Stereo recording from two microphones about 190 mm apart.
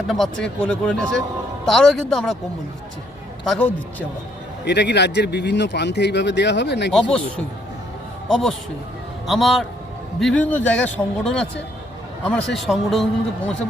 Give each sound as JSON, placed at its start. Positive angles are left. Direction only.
{"t": 0.1, "sound": "speech", "side_deg": 0}
{"t": 3.4, "sound": "speech", "side_deg": 0}
{"t": 4.6, "sound": "speech", "side_deg": 65}
{"t": 6.9, "sound": "a man's voice", "side_deg": 5}